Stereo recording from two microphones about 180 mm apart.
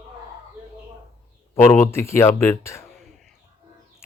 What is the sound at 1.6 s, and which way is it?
Speech, 15° left (ahead or behind).